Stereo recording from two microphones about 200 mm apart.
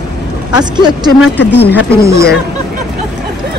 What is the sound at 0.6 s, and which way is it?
A man's voice, 20° right (ahead or behind).